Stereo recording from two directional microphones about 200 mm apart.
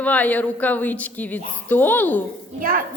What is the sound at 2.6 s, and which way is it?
Speech, 45° right (ahead or behind).